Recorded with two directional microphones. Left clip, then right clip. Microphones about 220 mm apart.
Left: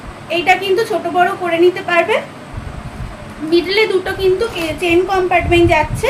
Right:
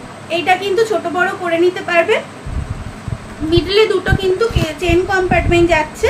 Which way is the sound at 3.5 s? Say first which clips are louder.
Right 1 dB; 15° right (ahead or behind).